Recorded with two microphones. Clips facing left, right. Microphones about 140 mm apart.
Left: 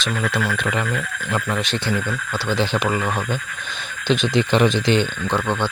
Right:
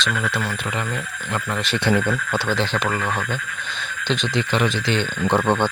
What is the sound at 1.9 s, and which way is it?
Speech, 20° right (ahead or behind).